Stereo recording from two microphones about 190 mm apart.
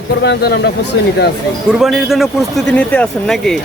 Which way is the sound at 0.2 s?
65° left (ahead or behind).